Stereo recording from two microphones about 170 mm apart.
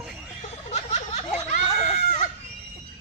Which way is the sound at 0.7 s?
40° left (ahead or behind).